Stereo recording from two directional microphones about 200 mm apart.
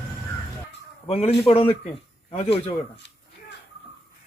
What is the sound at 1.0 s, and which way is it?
A man's voice, 30° left (ahead or behind).